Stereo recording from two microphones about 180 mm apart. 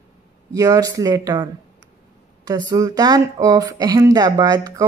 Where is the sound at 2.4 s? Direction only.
20° right (ahead or behind).